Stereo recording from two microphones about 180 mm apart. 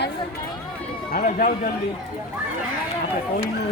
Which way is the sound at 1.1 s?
45° left (ahead or behind).